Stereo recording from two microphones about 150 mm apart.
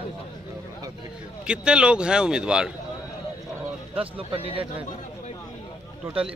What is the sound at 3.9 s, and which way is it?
Speech, 40° right (ahead or behind).